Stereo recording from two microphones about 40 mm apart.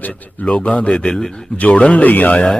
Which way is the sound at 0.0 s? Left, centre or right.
Left.